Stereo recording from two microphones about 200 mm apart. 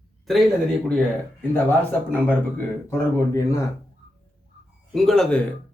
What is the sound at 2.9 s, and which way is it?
Speech, 15° left (ahead or behind).